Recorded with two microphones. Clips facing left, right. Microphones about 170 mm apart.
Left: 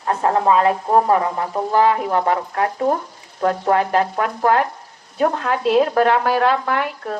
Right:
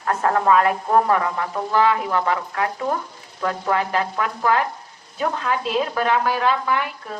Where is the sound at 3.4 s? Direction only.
40° left (ahead or behind).